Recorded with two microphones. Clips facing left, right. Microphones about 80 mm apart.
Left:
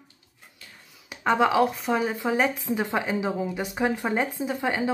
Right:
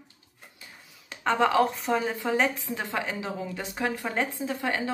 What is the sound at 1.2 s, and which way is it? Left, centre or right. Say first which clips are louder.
Speech: left 2 dB; centre.